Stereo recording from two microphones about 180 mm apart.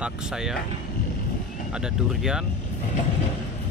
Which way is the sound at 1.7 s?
5° right (ahead or behind).